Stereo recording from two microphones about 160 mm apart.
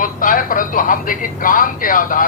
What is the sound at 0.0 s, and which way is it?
Speech, 60° left (ahead or behind).